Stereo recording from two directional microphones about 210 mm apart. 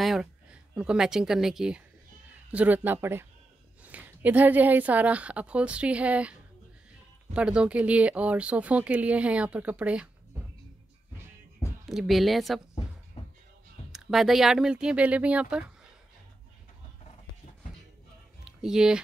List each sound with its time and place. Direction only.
0.0 s a woman's voice: 5° right (ahead or behind)
7.3 s speech: 5° right (ahead or behind)
11.8 s speech: centre (ahead or behind)
13.2 s music: 30° left (ahead or behind)
13.9 s speech: centre (ahead or behind)
18.4 s typing: 5° right (ahead or behind)